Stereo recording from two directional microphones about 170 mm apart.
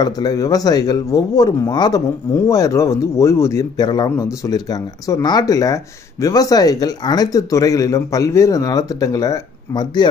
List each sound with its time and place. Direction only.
0.0 s speech: 20° left (ahead or behind)